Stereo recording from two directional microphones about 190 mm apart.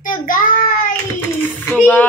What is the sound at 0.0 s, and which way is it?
Child singing, 45° left (ahead or behind).